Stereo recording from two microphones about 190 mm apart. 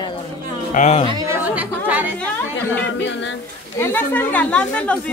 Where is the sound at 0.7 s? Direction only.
40° left (ahead or behind).